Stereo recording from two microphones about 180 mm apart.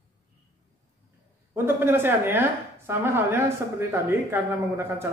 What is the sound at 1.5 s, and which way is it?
A woman's voice, 10° right (ahead or behind).